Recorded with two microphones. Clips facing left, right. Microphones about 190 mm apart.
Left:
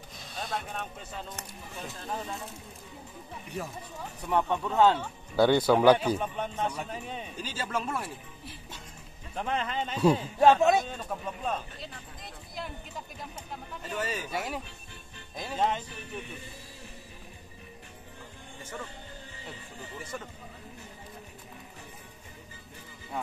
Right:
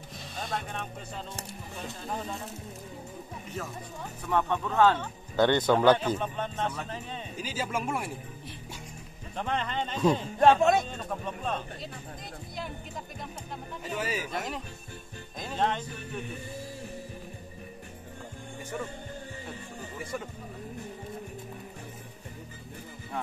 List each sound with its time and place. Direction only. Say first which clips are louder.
0.4 s speech: even; centre (ahead or behind)
3.6 s speech: left 1 dB; 15° left (ahead or behind)
7.3 s speech: right 2 dB; 10° right (ahead or behind)
9.3 s speech: even; 5° left (ahead or behind)
13.8 s speech: right 1 dB; 10° right (ahead or behind)
14.3 s speech: even; 10° left (ahead or behind)